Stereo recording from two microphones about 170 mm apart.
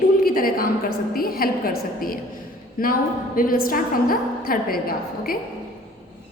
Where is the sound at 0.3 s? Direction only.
60° left (ahead or behind).